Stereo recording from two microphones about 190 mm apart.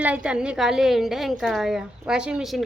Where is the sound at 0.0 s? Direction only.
5° right (ahead or behind).